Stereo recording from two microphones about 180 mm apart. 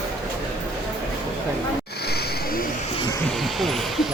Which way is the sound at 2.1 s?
60° left (ahead or behind).